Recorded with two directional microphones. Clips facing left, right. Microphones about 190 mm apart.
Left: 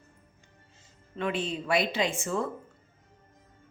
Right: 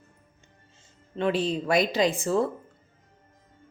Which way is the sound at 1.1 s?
35° right (ahead or behind).